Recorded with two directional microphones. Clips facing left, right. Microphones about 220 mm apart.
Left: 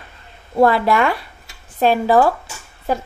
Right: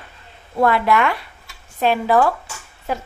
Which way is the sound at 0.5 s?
35° left (ahead or behind).